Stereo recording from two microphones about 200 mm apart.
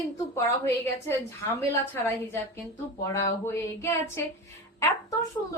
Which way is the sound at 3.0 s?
15° left (ahead or behind).